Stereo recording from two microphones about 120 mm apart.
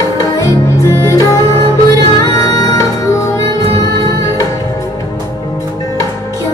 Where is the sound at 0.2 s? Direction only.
25° left (ahead or behind).